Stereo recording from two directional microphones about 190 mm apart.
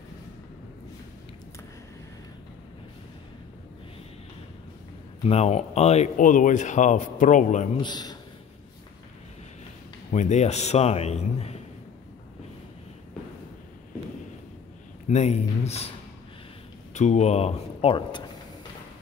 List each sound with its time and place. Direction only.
5.2 s speech: 35° left (ahead or behind)
7.7 s a man's voice: 20° left (ahead or behind)
10.1 s speech: 40° left (ahead or behind)
15.0 s speech: 35° left (ahead or behind)
16.9 s speech: 40° left (ahead or behind)